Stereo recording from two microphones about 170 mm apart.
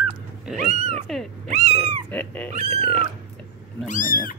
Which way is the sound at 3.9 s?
50° left (ahead or behind).